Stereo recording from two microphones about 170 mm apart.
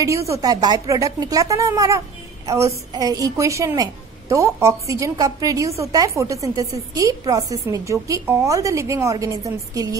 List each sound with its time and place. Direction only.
0.0 s a woman's voice: 20° right (ahead or behind)